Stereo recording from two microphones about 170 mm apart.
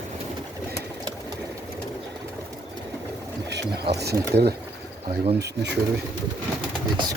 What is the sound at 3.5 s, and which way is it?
Speech, 85° right.